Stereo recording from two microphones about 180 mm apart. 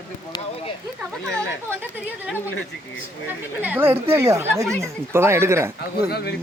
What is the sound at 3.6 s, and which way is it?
A man's voice, 10° right (ahead or behind).